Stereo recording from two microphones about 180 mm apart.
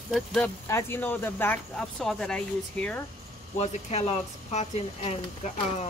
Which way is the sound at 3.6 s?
35° left (ahead or behind).